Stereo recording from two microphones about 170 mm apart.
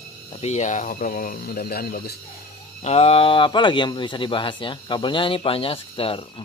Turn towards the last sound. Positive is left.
turn(degrees=30)  # may be behind; listen again after turning